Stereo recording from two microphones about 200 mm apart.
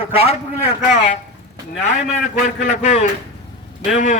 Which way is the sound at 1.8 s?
35° left (ahead or behind).